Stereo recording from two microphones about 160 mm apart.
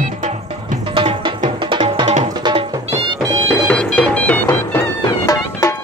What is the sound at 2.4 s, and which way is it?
Music, 30° right (ahead or behind).